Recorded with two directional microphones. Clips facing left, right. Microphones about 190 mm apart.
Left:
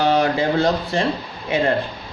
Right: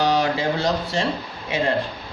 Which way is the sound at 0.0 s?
55° left (ahead or behind).